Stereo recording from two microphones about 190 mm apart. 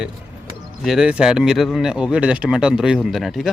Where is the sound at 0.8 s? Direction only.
5° right (ahead or behind).